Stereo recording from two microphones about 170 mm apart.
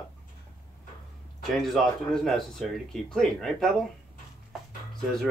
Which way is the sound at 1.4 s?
Centre (ahead or behind).